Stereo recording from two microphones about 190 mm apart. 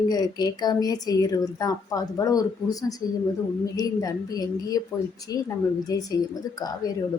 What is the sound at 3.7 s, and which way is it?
A woman's voice, 20° left (ahead or behind).